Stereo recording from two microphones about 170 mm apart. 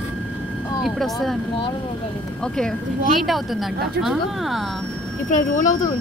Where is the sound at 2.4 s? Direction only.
5° left (ahead or behind).